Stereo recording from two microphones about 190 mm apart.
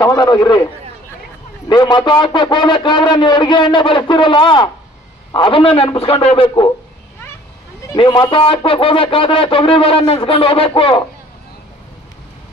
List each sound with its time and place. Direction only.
0.0 s speech: 20° left (ahead or behind)
1.7 s speech: 20° left (ahead or behind)
7.8 s speech: 20° left (ahead or behind)